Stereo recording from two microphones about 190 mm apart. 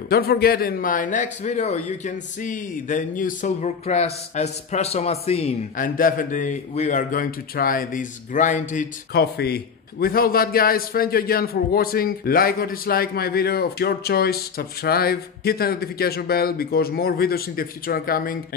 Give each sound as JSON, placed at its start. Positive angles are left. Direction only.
{"t": 0.1, "sound": "a man's voice", "side_deg": 55}
{"t": 5.8, "sound": "a man's voice", "side_deg": 45}
{"t": 9.1, "sound": "a man's voice", "side_deg": 55}